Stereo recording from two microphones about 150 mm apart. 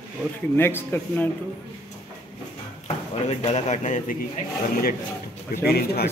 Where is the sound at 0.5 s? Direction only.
15° left (ahead or behind).